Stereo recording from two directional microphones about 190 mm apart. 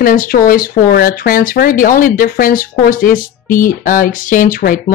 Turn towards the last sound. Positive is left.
turn(degrees=45)  # may be behind; listen again after turning